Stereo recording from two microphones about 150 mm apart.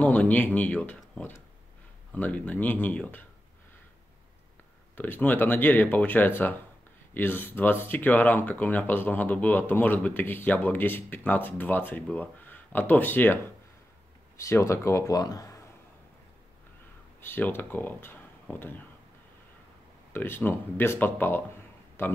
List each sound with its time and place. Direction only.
0.0 s speech: 10° left (ahead or behind)
4.9 s speech: 15° left (ahead or behind)
17.2 s speech: 15° left (ahead or behind)
20.1 s speech: 15° left (ahead or behind)